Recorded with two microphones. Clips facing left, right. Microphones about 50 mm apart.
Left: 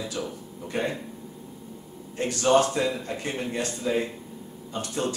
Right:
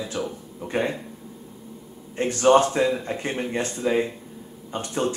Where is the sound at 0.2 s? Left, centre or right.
Right.